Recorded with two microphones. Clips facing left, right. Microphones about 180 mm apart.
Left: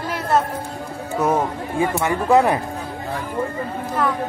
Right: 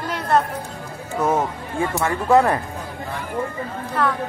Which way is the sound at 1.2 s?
15° left (ahead or behind).